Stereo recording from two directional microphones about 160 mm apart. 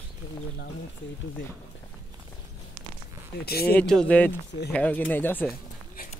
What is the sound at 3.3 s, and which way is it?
Speech, 75° left (ahead or behind).